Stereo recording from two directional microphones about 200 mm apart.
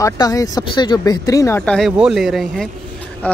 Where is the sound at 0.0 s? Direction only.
15° left (ahead or behind).